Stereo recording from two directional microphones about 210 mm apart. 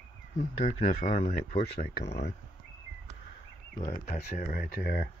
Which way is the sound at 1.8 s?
50° left (ahead or behind).